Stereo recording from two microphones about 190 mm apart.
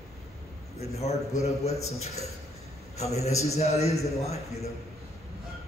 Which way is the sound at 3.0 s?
35° left (ahead or behind).